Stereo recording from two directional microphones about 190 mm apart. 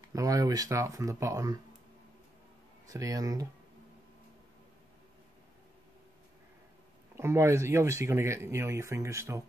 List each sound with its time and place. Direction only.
0.1 s speech: 20° right (ahead or behind)
2.9 s speech: 15° right (ahead or behind)
7.2 s speech: 15° right (ahead or behind)